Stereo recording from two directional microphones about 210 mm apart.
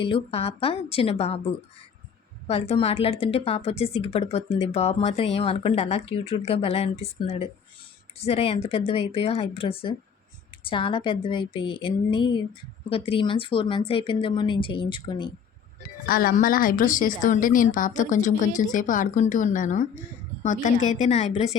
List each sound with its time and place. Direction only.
0.0 s a woman's voice: 25° left (ahead or behind)
2.5 s a woman's voice: 30° left (ahead or behind)
16.0 s a woman's voice: 45° left (ahead or behind)